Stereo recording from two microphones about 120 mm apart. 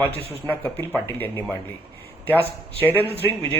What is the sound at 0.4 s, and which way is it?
Speech, 15° left (ahead or behind).